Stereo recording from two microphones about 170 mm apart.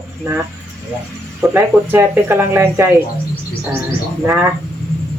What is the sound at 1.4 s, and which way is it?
Speech, 15° right (ahead or behind).